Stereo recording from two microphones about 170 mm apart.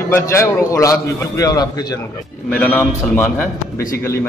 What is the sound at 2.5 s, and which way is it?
Speech, 10° left (ahead or behind).